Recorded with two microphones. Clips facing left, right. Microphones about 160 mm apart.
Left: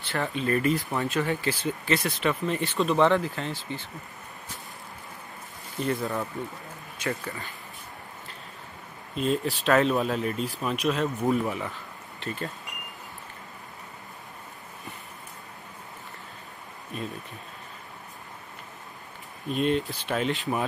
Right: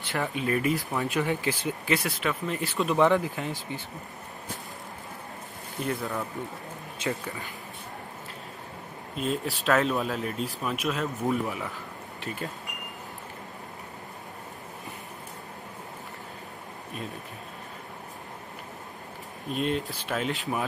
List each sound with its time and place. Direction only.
0.0 s speech: 15° right (ahead or behind)
5.8 s speech: 5° right (ahead or behind)
7.1 s speech: 15° right (ahead or behind)
9.1 s speech: 5° right (ahead or behind)
19.5 s speech: centre (ahead or behind)